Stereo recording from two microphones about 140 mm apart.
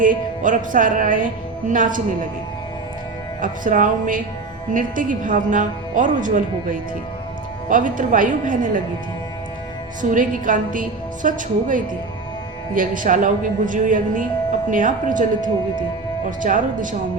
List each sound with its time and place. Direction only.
0.0 s a woman's voice: 70° right (ahead or behind)
3.4 s a woman's voice: 70° right (ahead or behind)
10.0 s a woman's voice: 70° right (ahead or behind)